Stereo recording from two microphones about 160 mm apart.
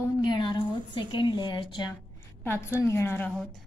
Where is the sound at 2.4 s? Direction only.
15° left (ahead or behind).